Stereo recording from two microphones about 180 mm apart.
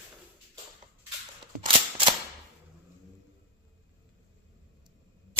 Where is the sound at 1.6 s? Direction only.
25° right (ahead or behind).